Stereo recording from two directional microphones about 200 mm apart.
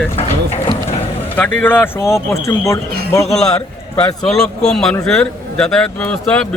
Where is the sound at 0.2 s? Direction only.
30° left (ahead or behind).